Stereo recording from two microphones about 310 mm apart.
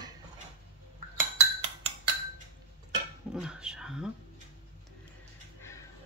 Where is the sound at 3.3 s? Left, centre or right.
Centre.